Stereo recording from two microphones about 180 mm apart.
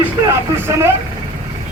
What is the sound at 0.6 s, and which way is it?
Speech, 15° right (ahead or behind).